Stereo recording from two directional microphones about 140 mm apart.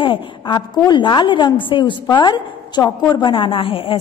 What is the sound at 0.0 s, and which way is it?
A woman's voice, 35° left (ahead or behind).